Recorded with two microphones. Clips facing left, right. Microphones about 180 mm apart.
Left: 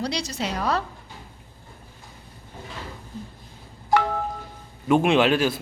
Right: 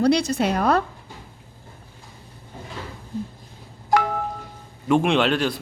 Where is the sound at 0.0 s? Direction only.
55° right (ahead or behind).